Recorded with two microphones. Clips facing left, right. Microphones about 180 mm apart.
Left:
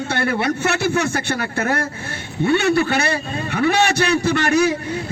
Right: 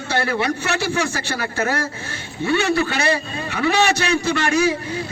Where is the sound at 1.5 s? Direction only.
55° left (ahead or behind).